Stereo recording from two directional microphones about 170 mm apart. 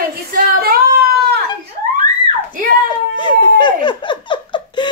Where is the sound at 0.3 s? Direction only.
60° right (ahead or behind).